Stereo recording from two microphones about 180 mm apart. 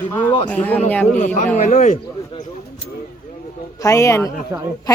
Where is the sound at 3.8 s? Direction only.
15° left (ahead or behind).